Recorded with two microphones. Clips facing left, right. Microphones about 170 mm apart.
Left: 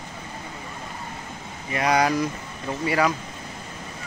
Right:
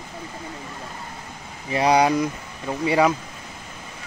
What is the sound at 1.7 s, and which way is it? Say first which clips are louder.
Speech: right 3 dB; 30° right (ahead or behind).